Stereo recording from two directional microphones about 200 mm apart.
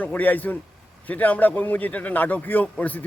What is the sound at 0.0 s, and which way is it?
A man's voice, 10° left (ahead or behind).